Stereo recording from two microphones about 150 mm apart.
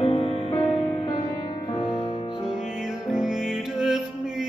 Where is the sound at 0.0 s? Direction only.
35° left (ahead or behind).